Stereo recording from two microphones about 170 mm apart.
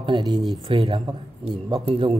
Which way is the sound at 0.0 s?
25° right (ahead or behind).